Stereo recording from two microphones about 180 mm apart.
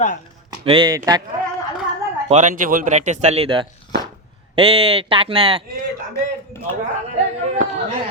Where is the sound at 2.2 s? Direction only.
40° right (ahead or behind).